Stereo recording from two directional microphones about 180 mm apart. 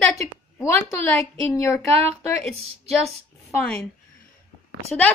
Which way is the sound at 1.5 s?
15° left (ahead or behind).